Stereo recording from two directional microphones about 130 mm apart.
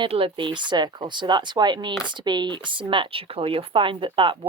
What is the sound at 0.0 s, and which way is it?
Speech, 40° right (ahead or behind).